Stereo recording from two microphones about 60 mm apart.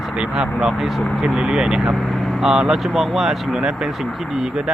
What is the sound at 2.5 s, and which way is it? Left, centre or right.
Speech, centre.